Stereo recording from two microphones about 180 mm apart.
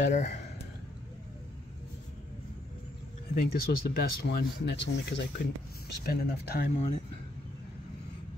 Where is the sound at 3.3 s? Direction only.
55° left (ahead or behind); by 5.3 s 75° left (ahead or behind).